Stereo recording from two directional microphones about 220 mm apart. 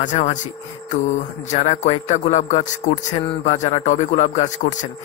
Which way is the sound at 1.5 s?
30° left (ahead or behind).